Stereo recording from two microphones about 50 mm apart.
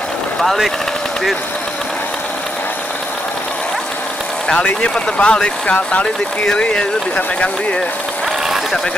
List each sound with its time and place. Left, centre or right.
0.4 s speech: centre
4.6 s speech: left
4.9 s speech: centre